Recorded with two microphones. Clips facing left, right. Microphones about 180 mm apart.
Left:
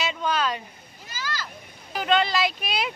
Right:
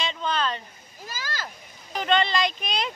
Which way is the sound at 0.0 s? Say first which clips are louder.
Left 2 dB; 10° left (ahead or behind).